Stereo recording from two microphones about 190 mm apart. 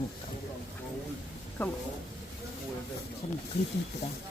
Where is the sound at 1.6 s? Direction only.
10° left (ahead or behind).